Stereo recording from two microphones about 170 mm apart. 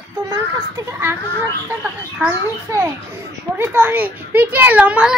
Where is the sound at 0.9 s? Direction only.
15° right (ahead or behind).